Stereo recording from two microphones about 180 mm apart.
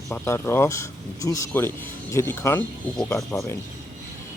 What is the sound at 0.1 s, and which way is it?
Speech, 15° left (ahead or behind).